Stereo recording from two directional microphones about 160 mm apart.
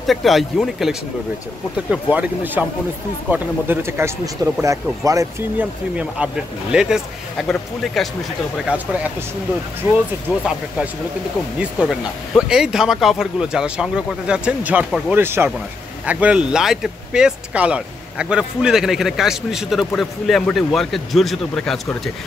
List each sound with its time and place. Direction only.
0.0 s speech: centre (ahead or behind)
2.1 s speech: 10° right (ahead or behind)
5.9 s speech: 5° right (ahead or behind)
11.5 s speech: 5° right (ahead or behind)